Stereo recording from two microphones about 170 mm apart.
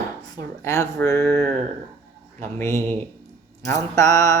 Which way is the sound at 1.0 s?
15° left (ahead or behind).